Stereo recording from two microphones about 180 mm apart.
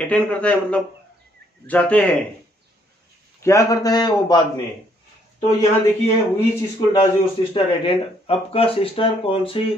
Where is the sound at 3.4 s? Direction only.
20° left (ahead or behind).